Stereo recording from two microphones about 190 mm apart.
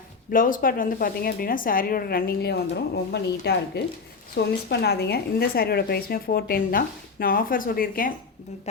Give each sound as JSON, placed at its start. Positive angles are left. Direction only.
{"t": 0.3, "sound": "speech", "side_deg": 45}